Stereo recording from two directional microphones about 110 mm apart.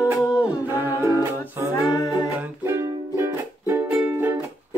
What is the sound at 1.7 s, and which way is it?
Music, 30° left (ahead or behind).